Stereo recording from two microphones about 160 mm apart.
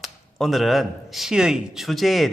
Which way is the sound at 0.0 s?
Centre (ahead or behind).